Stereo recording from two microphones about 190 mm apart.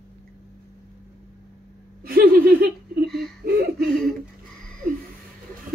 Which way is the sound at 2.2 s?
55° right (ahead or behind).